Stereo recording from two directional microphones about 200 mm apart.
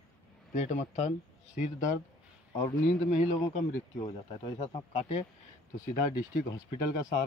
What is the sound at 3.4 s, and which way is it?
Speech, 15° left (ahead or behind).